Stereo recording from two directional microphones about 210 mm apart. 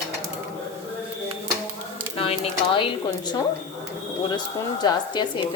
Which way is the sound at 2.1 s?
25° left (ahead or behind).